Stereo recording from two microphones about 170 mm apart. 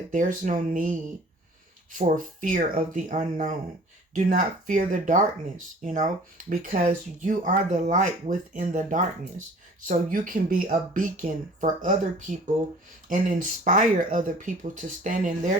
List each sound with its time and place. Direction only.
0.1 s speech: 50° right (ahead or behind)